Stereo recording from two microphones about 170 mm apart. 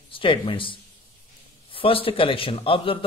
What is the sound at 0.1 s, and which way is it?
A man's voice, 30° left (ahead or behind).